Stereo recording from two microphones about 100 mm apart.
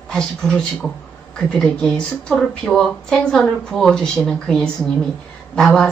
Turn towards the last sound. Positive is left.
turn(degrees=5)  # may be behind; listen again after turning